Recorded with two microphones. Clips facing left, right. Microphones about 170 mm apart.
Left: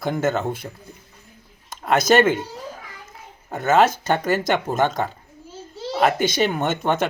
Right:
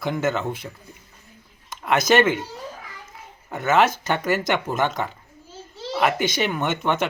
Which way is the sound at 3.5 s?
40° left (ahead or behind).